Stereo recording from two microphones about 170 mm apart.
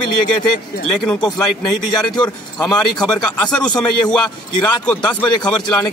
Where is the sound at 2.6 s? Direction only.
5° left (ahead or behind).